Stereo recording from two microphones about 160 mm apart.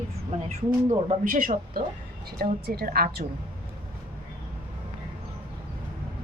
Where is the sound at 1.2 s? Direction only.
55° right (ahead or behind).